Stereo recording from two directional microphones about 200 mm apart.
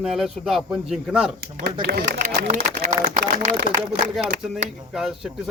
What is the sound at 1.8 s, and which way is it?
A man's voice, 50° right (ahead or behind).